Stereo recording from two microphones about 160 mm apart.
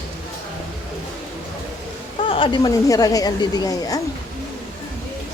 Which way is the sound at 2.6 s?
20° left (ahead or behind).